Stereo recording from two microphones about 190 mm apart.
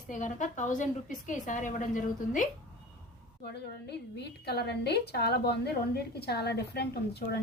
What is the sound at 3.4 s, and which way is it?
A woman's voice, 60° left (ahead or behind).